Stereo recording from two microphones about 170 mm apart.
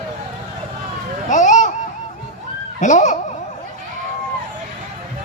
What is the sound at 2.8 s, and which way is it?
Speech, 45° left (ahead or behind).